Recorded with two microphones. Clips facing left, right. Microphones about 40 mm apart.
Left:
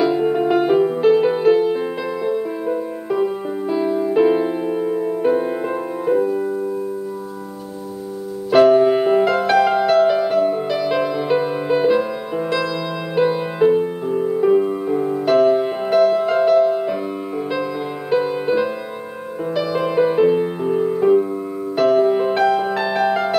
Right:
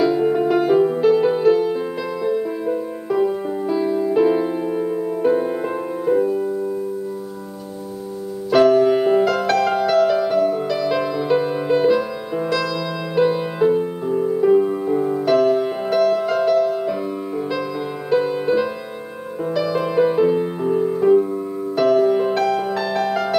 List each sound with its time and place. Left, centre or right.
0.0 s music: centre
8.5 s music: centre
18.1 s music: centre